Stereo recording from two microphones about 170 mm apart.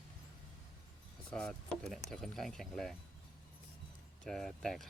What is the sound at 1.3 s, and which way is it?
Speech, 5° left (ahead or behind).